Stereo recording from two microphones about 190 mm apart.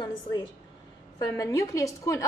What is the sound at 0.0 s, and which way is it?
A woman's voice, 20° left (ahead or behind).